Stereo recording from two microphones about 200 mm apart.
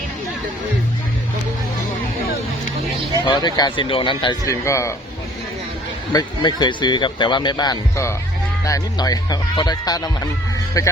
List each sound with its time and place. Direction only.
3.2 s speech: 20° left (ahead or behind)
6.1 s speech: 20° left (ahead or behind)